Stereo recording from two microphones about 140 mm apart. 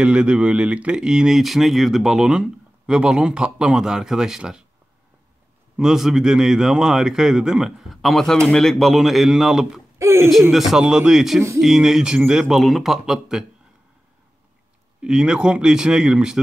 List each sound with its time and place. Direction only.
0.0 s speech: 5° right (ahead or behind)
5.8 s speech: 5° right (ahead or behind)
9.9 s speech: 20° right (ahead or behind)
10.5 s speech: 5° right (ahead or behind)
15.0 s speech: 5° right (ahead or behind)